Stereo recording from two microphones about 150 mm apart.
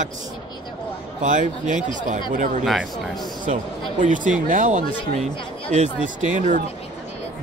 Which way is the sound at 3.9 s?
60° right (ahead or behind).